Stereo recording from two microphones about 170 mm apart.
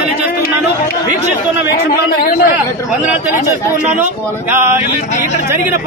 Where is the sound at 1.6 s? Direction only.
60° left (ahead or behind).